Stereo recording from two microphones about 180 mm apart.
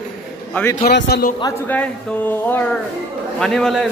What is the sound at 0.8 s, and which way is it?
Speech, 60° left (ahead or behind).